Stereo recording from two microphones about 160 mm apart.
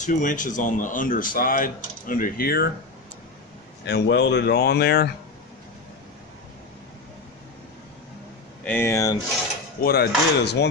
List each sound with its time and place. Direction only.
0.0 s speech: 50° left (ahead or behind); by 2.7 s 75° left (ahead or behind)
3.8 s speech: 90° left
8.6 s speech: 15° left (ahead or behind)
9.8 s speech: 80° left